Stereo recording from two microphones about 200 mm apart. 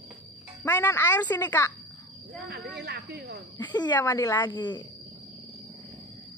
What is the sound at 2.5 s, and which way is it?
Speech, 55° right (ahead or behind).